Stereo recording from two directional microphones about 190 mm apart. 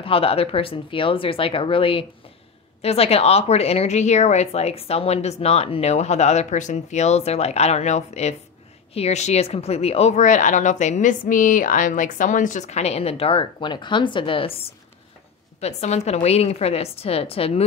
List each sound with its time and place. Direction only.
0.0 s a woman's voice: 30° left (ahead or behind)
15.6 s a woman's voice: 35° left (ahead or behind)